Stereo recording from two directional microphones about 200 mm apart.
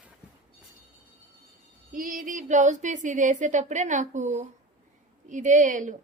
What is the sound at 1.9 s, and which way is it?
Speech, 45° right (ahead or behind).